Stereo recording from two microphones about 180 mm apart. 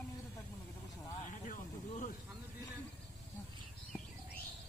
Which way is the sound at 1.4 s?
45° left (ahead or behind).